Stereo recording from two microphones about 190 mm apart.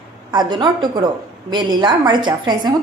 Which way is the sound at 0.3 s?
20° right (ahead or behind).